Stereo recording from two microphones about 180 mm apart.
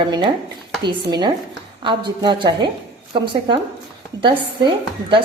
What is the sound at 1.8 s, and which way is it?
Speech, 25° right (ahead or behind).